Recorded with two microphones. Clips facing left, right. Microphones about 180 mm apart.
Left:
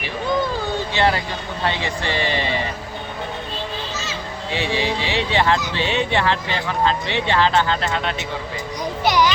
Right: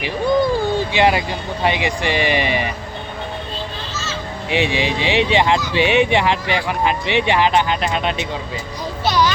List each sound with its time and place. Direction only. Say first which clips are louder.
0.0 s a sound: right 5 dB; 10° right (ahead or behind)
1.6 s speech: right 5 dB; 15° right (ahead or behind)
4.4 s speech: right 3 dB; 15° right (ahead or behind)
9.0 s children playing: even; 20° left (ahead or behind)